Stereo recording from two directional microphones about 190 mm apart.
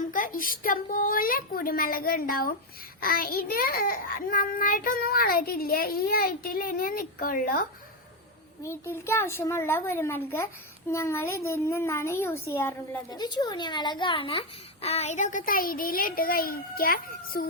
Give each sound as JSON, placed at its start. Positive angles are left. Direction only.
{"t": 0.0, "sound": "a child's voice", "side_deg": 45}
{"t": 8.6, "sound": "a child's voice", "side_deg": 15}